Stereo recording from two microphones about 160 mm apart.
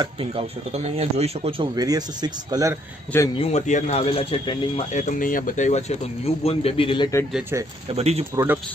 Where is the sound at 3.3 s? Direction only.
40° left (ahead or behind).